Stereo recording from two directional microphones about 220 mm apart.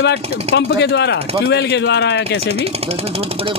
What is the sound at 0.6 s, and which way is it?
Speech, 50° left (ahead or behind).